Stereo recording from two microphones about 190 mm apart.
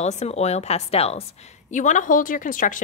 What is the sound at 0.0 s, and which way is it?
A woman's voice, 35° left (ahead or behind).